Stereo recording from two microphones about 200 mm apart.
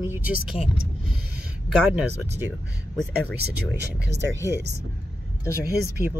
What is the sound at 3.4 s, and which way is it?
Speech, 60° right (ahead or behind).